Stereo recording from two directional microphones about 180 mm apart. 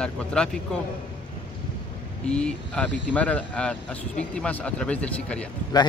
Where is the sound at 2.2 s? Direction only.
5° left (ahead or behind).